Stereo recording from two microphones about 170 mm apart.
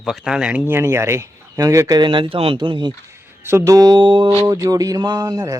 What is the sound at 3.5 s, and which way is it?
Mantra, 15° right (ahead or behind).